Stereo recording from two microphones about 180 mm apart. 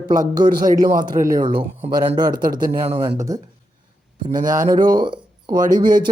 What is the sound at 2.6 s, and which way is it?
Speech, 35° right (ahead or behind).